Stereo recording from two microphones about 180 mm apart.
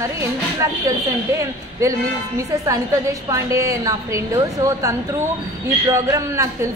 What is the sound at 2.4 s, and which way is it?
A woman's voice, 15° right (ahead or behind).